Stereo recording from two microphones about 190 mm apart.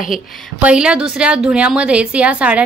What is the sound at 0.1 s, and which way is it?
A woman's voice, 5° right (ahead or behind).